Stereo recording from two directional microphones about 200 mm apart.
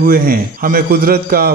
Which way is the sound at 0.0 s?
45° right (ahead or behind).